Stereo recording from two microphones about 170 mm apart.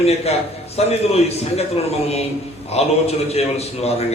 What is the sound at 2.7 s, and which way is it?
A man's voice, 35° left (ahead or behind).